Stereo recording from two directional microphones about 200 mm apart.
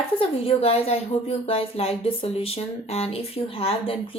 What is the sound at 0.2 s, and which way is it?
Speech, 30° left (ahead or behind).